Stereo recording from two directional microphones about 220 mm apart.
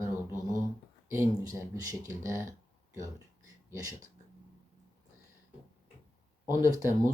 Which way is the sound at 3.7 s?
15° right (ahead or behind).